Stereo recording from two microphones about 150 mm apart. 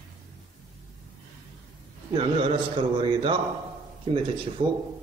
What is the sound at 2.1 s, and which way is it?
A man's voice, 40° right (ahead or behind).